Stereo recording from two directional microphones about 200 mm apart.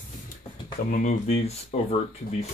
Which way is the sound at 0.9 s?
40° left (ahead or behind).